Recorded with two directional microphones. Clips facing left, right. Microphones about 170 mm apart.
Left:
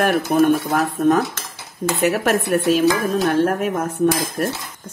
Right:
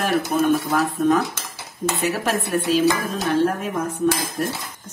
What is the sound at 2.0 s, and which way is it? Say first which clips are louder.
Speech: left 6 dB; 60° left (ahead or behind).